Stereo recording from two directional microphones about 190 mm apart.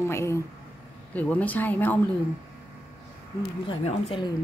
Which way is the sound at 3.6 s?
25° left (ahead or behind).